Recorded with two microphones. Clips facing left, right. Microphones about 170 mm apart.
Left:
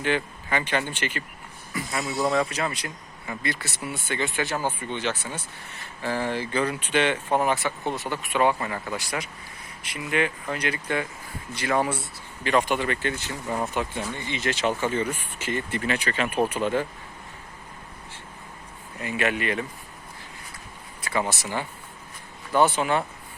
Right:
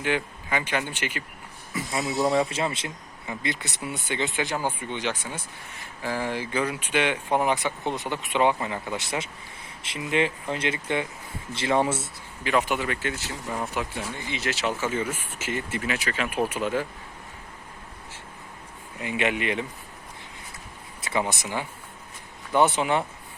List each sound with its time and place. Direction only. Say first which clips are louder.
0.0 s speech: left 1 dB; 10° right (ahead or behind)
1.9 s speech: right 1 dB; 20° right (ahead or behind)
12.4 s speech: left 2 dB; 5° right (ahead or behind)
18.9 s speech: even; 15° right (ahead or behind)
21.0 s speech: even; 20° right (ahead or behind)